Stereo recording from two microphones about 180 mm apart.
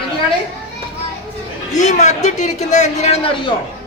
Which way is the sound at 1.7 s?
40° left (ahead or behind).